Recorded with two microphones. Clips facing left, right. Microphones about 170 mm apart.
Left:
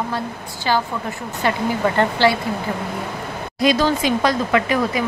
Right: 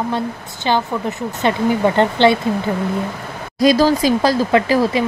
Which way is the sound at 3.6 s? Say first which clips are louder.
Right 5 dB; 35° right (ahead or behind).